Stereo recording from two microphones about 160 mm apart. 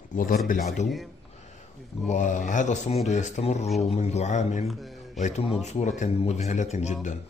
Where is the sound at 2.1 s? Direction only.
50° left (ahead or behind).